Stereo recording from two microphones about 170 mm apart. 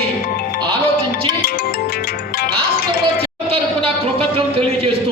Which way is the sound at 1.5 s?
60° left (ahead or behind).